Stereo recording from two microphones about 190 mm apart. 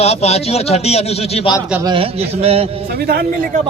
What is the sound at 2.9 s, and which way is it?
Speech, 55° right (ahead or behind).